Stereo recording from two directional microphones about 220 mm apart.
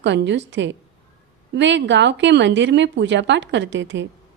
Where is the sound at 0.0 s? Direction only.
55° right (ahead or behind).